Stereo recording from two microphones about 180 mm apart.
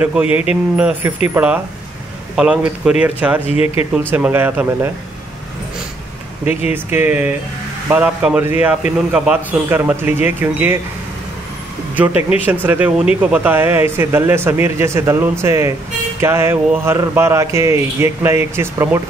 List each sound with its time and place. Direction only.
0.0 s speech: 10° right (ahead or behind)
3.4 s speech: 35° left (ahead or behind)
4.1 s speech: 10° right (ahead or behind)
6.7 s speech: 10° right (ahead or behind)
11.9 s speech: 10° right (ahead or behind)